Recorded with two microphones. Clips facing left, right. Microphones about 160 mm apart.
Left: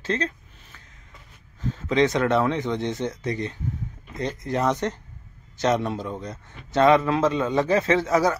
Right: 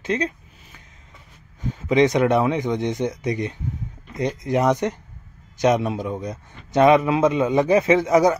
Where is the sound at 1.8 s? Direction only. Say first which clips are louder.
Right 4 dB; 15° right (ahead or behind).